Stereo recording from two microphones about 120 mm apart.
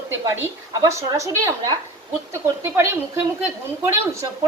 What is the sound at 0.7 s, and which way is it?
A woman's voice, 25° right (ahead or behind).